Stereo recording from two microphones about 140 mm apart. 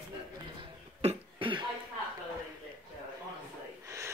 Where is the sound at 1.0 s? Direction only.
40° right (ahead or behind).